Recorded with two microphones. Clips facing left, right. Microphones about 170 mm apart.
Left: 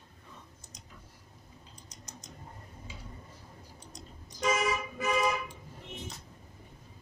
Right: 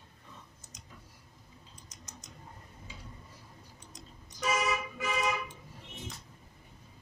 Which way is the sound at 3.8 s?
35° left (ahead or behind).